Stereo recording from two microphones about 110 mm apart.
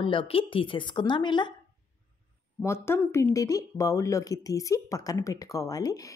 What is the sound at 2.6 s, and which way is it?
Speech, 25° left (ahead or behind).